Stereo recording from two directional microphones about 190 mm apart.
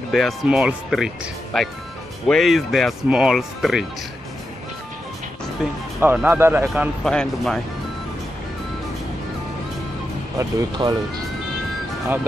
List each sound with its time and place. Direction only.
0.1 s speech: centre (ahead or behind)
5.6 s speech: centre (ahead or behind)
7.1 s speech: 5° left (ahead or behind)
10.4 s speech: 20° right (ahead or behind)